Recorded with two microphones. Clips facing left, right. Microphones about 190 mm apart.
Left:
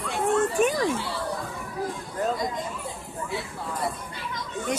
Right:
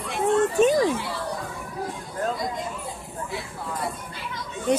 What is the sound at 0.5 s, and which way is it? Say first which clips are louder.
Speech: right 4 dB; 25° right (ahead or behind).